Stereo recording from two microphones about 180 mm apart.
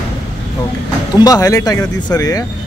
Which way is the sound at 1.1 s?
20° left (ahead or behind).